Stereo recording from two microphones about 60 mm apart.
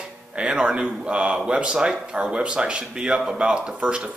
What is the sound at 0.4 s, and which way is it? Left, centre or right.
Speech, centre.